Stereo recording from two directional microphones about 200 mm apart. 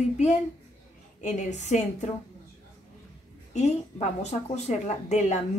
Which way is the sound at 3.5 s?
35° left (ahead or behind).